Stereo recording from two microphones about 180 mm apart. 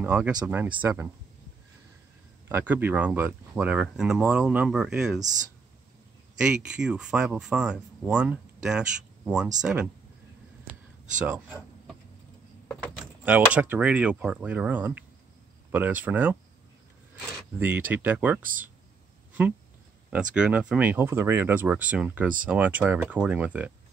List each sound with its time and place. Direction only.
0.0 s speech: 10° right (ahead or behind)
2.4 s speech: 10° right (ahead or behind)
6.4 s speech: 5° right (ahead or behind)
11.2 s speech: 5° right (ahead or behind)
12.6 s door: 5° left (ahead or behind)
13.2 s speech: 10° right (ahead or behind)
17.6 s speech: 10° right (ahead or behind)
18.4 s speech: 50° right (ahead or behind)
20.1 s speech: 5° right (ahead or behind)